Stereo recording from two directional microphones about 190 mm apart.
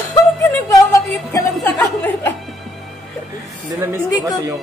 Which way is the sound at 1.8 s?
10° left (ahead or behind).